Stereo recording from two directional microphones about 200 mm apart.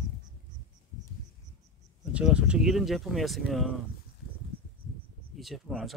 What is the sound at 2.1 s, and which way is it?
Speech, 5° right (ahead or behind).